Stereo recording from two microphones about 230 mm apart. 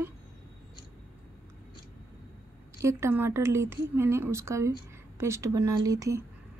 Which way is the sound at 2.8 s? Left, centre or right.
Centre.